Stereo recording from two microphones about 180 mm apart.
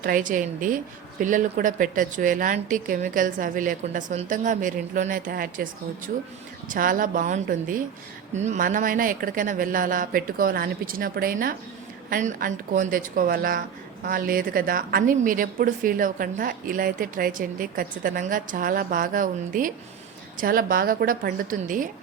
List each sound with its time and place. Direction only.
0.0 s speech: 50° right (ahead or behind)
6.7 s speech: 50° right (ahead or behind)